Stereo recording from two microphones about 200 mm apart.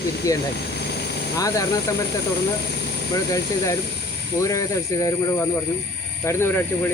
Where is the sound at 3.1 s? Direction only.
15° left (ahead or behind).